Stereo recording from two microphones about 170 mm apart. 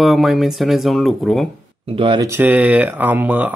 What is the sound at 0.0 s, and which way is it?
Speech, centre (ahead or behind).